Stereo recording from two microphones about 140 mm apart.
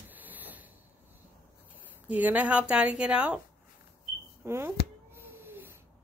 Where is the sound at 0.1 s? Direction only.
10° right (ahead or behind).